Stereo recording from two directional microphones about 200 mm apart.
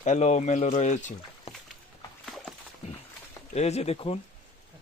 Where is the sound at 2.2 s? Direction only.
Centre (ahead or behind).